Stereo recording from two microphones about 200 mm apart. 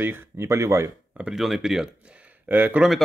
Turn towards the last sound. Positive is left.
turn(degrees=-5)  # may be behind; listen again after turning